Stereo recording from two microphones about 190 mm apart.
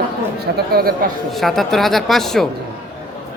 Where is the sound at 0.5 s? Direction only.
55° right (ahead or behind).